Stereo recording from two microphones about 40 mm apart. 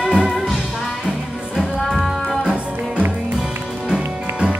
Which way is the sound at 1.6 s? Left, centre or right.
Centre.